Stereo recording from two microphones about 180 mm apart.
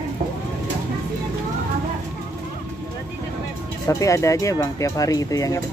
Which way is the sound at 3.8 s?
15° left (ahead or behind).